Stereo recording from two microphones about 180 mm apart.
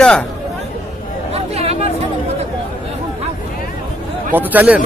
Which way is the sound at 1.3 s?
35° right (ahead or behind).